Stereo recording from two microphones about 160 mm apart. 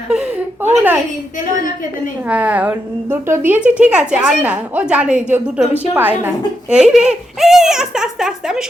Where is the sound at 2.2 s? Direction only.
10° right (ahead or behind).